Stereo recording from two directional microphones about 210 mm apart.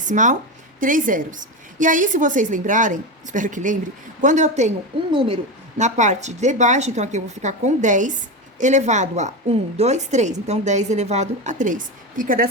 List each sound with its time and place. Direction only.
0.0 s a woman's voice: 35° right (ahead or behind)